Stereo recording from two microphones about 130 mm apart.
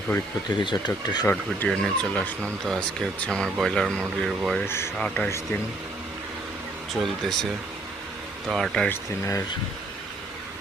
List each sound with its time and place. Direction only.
0.5 s speech: 35° left (ahead or behind)
1.3 s speech: 10° left (ahead or behind)
4.6 s speech: 20° left (ahead or behind)
4.9 s speech: 5° left (ahead or behind)
6.9 s speech: centre (ahead or behind)
8.5 s speech: 5° left (ahead or behind)
8.9 s speech: 20° left (ahead or behind)